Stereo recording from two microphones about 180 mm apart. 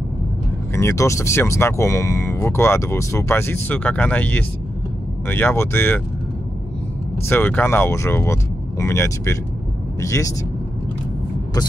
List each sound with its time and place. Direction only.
0.7 s speech: 15° left (ahead or behind)
7.2 s speech: 10° left (ahead or behind)